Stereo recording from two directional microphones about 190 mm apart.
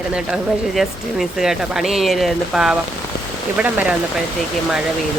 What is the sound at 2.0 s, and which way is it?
Speech, centre (ahead or behind).